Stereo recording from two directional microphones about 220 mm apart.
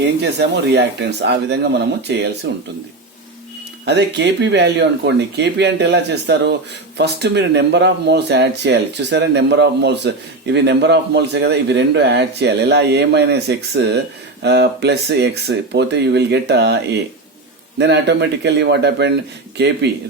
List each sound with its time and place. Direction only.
0.0 s speech: 50° right (ahead or behind)
3.8 s speech: 50° right (ahead or behind)